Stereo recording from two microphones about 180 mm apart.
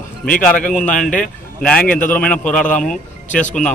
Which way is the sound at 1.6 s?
5° left (ahead or behind).